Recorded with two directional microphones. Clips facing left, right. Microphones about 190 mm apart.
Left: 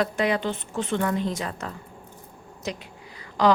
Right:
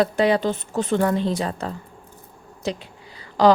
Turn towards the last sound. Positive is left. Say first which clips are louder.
# right 4 dB
turn(degrees=-35)  # may be behind; listen again after turning